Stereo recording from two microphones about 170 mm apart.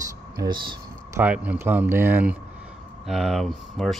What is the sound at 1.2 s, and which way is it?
Speech, 10° right (ahead or behind).